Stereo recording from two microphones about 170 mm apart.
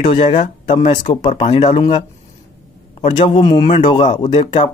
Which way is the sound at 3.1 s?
30° left (ahead or behind).